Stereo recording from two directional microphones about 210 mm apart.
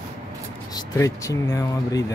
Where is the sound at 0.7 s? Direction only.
15° left (ahead or behind).